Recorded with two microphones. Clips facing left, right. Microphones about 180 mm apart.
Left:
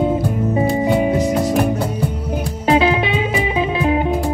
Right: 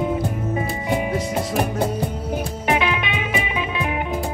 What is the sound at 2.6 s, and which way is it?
Music, 30° left (ahead or behind).